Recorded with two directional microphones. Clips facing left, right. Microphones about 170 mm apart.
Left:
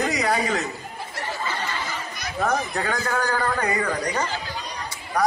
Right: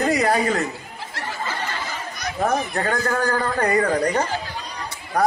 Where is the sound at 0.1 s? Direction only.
55° right (ahead or behind).